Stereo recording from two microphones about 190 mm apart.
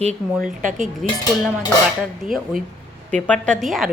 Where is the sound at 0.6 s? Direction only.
40° right (ahead or behind).